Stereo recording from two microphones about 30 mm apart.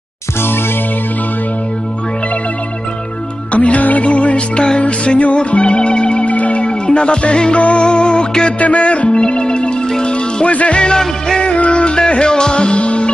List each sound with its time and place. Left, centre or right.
3.5 s music: left
6.3 s music: left
6.6 s music: left
8.5 s music: left
11.0 s music: centre
11.4 s music: left
12.1 s music: left
12.6 s music: left